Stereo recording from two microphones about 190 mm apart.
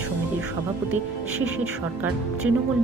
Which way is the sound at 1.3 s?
90° right.